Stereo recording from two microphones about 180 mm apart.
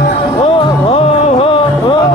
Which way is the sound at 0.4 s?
30° left (ahead or behind).